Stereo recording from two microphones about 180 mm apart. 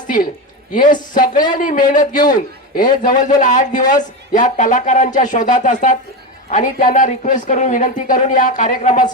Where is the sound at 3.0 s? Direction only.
45° left (ahead or behind).